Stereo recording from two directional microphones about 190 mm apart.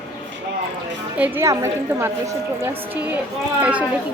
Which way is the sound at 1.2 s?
15° right (ahead or behind).